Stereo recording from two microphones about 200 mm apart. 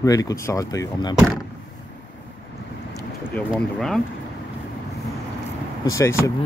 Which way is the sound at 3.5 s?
Centre (ahead or behind).